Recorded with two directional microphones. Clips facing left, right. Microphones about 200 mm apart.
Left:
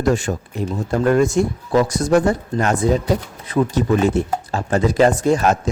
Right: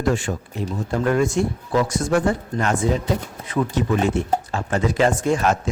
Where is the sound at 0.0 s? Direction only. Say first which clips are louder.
Left 3 dB; 40° left (ahead or behind).